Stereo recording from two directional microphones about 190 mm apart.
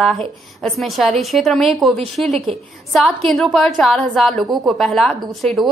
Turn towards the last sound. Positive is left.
turn(degrees=0)  # may be behind; listen again after turning